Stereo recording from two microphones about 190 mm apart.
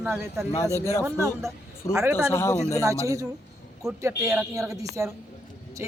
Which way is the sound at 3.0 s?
15° right (ahead or behind).